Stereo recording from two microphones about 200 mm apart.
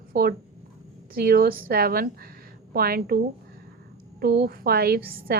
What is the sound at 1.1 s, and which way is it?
A woman's voice, 50° right (ahead or behind).